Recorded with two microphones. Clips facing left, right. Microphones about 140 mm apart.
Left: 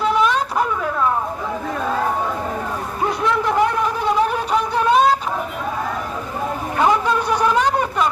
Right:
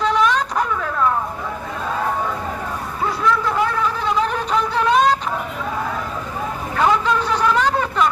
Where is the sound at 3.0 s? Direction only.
20° left (ahead or behind).